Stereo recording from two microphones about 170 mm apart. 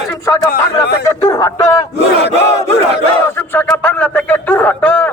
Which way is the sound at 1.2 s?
20° left (ahead or behind).